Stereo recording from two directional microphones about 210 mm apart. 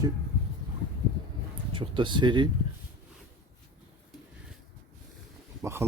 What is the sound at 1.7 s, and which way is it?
Speech, 25° right (ahead or behind).